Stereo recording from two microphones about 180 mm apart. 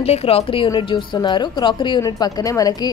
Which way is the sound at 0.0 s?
35° left (ahead or behind).